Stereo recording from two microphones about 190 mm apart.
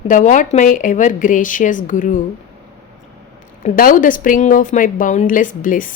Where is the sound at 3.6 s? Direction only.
45° left (ahead or behind).